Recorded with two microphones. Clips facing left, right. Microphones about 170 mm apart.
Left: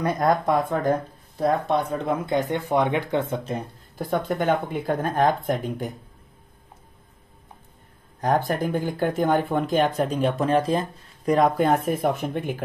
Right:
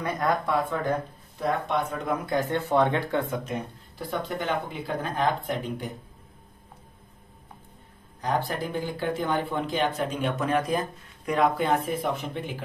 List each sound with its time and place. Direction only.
0.0 s speech: 40° left (ahead or behind); by 3.3 s 20° left (ahead or behind)
4.0 s speech: 45° left (ahead or behind)
8.2 s speech: 50° left (ahead or behind)